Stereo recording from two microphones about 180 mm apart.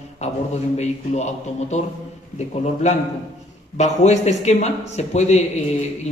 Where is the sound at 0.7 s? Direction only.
40° left (ahead or behind).